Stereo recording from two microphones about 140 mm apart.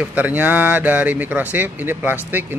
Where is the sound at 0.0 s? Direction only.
10° right (ahead or behind).